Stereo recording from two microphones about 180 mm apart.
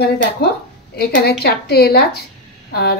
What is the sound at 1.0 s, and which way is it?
A woman's voice, 60° left (ahead or behind).